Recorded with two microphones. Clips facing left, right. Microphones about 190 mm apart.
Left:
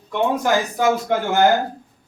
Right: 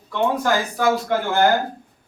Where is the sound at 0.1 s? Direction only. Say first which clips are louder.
Left 1 dB; 20° left (ahead or behind).